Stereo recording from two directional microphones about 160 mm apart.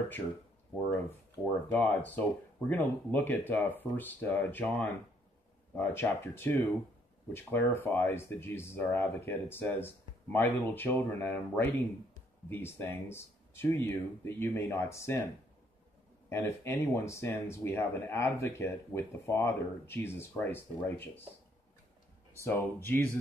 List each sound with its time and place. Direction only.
1.4 s speech: 15° left (ahead or behind)
16.3 s speech: 15° left (ahead or behind)
22.4 s speech: 15° left (ahead or behind)